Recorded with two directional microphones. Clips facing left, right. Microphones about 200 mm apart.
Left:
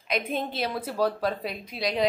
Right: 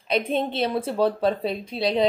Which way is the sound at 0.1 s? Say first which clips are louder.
Right 5 dB; 25° right (ahead or behind).